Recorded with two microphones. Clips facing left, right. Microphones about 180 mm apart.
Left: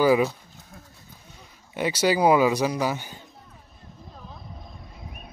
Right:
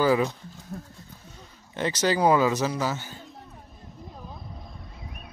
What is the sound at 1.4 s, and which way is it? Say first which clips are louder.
Speech: left 2 dB; 10° left (ahead or behind).